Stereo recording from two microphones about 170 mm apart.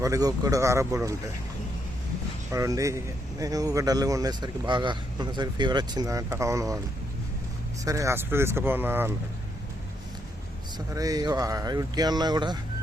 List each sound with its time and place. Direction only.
0.0 s speech: 20° right (ahead or behind)
2.5 s speech: 20° right (ahead or behind)
7.9 s speech: 20° right (ahead or behind)
10.8 s speech: 20° right (ahead or behind)